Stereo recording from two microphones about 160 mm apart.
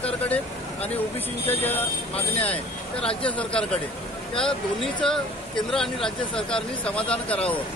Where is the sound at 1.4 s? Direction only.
10° left (ahead or behind).